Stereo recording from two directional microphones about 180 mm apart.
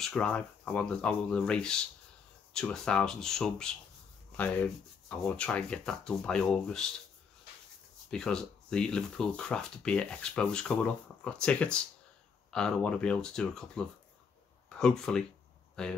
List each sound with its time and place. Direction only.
0.0 s speech: 5° left (ahead or behind)
5.1 s speech: 5° left (ahead or behind)
8.1 s speech: 5° left (ahead or behind)